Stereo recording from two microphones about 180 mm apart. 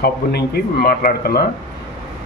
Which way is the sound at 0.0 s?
60° left (ahead or behind).